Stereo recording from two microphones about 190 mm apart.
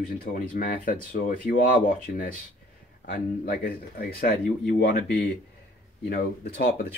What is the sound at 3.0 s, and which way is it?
Speech, 50° left (ahead or behind).